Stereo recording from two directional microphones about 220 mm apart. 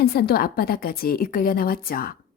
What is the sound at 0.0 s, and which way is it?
A woman's voice, 45° left (ahead or behind).